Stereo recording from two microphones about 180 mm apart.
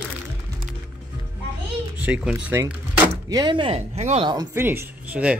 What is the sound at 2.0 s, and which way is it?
Speech, 5° right (ahead or behind).